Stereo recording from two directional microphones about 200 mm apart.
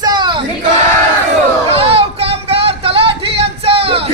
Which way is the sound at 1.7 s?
30° right (ahead or behind).